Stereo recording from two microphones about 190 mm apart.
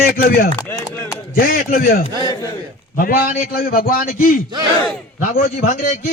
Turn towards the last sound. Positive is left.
turn(degrees=45)  # may be behind; listen again after turning